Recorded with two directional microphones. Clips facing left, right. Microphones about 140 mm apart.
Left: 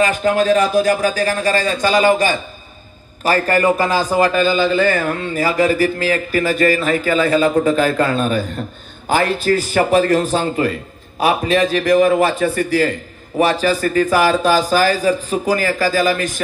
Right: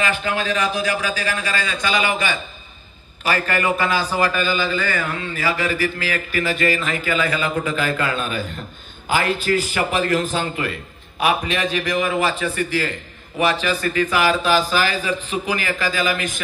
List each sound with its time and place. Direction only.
0.0 s a man's voice: 40° left (ahead or behind)